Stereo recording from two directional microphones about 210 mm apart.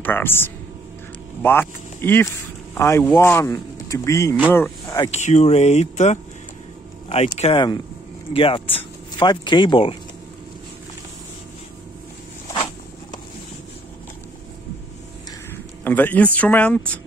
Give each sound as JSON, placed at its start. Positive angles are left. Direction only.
{"t": 0.0, "sound": "a man's voice", "side_deg": 10}
{"t": 5.1, "sound": "speech", "side_deg": 30}
{"t": 15.5, "sound": "a sound", "side_deg": 10}
{"t": 16.3, "sound": "speech", "side_deg": 5}